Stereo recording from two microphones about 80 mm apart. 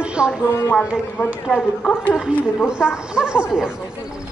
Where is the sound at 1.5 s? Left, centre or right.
Centre.